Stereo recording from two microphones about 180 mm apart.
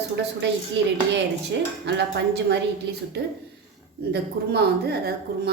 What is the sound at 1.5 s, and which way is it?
Dishes, 75° right (ahead or behind).